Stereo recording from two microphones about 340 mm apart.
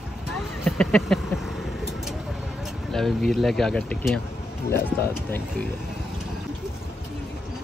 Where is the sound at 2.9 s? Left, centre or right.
Centre.